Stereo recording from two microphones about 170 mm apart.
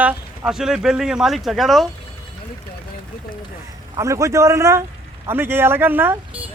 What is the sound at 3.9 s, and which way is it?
A man's voice, 20° right (ahead or behind).